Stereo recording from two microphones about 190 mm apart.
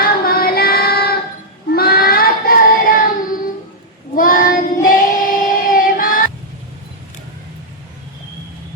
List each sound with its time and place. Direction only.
0.0 s child singing: 50° left (ahead or behind)
4.1 s child singing: 45° left (ahead or behind)